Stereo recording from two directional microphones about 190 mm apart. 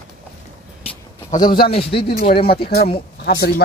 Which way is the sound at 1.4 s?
50° left (ahead or behind).